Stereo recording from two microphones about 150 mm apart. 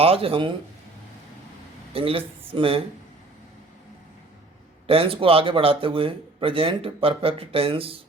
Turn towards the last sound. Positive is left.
turn(degrees=-40)  # may be behind; listen again after turning